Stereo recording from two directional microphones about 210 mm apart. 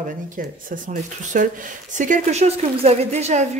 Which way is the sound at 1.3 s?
40° right (ahead or behind).